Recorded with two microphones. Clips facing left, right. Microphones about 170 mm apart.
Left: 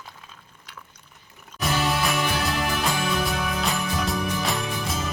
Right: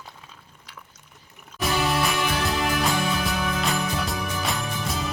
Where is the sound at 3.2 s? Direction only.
Centre (ahead or behind).